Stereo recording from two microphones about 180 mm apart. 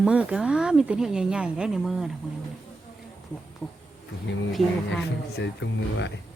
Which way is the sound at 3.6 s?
5° left (ahead or behind).